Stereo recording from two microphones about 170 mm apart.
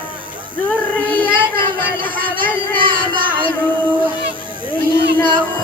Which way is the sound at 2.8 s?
30° right (ahead or behind).